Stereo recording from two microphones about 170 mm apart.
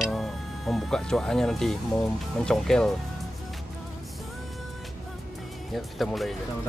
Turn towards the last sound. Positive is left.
turn(degrees=0)  # may be behind; listen again after turning